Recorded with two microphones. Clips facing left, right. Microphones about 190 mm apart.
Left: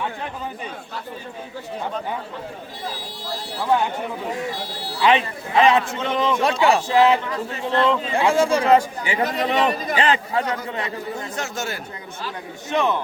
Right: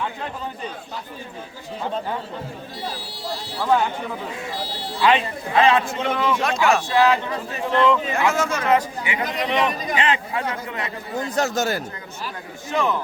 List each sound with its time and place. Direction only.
4.9 s speech: 20° left (ahead or behind)
6.4 s speech: 35° left (ahead or behind)
11.3 s speech: 40° right (ahead or behind)
12.7 s speech: 20° left (ahead or behind)